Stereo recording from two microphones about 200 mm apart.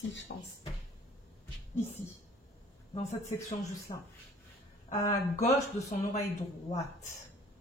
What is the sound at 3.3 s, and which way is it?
Speech, 15° left (ahead or behind).